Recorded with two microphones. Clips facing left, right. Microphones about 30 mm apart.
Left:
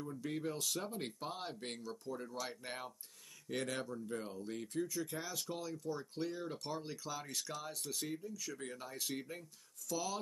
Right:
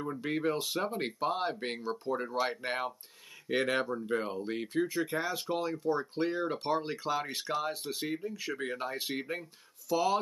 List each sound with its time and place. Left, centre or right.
0.0 s speech: right